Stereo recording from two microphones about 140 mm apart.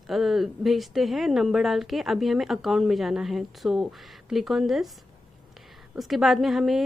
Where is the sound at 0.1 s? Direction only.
Centre (ahead or behind).